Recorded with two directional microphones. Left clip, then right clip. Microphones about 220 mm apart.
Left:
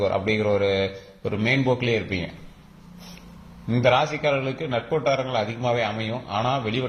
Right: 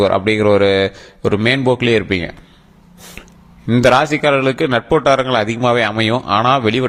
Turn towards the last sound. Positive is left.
turn(degrees=-50)  # may be behind; listen again after turning